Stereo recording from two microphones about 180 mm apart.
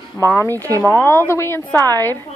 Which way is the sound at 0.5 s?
20° right (ahead or behind).